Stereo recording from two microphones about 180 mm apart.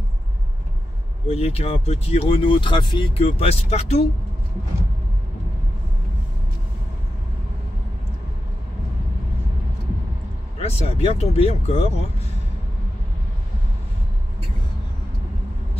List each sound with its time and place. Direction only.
1.3 s speech: 35° left (ahead or behind)
10.6 s speech: 35° left (ahead or behind)